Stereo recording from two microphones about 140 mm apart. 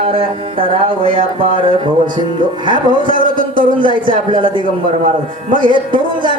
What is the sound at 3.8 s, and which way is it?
Music, 35° right (ahead or behind).